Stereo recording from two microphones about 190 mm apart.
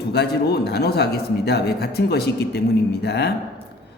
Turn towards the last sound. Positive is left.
turn(degrees=60)  # may be behind; listen again after turning